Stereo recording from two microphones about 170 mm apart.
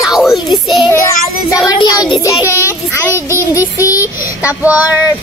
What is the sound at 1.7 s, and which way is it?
Child singing, 20° left (ahead or behind).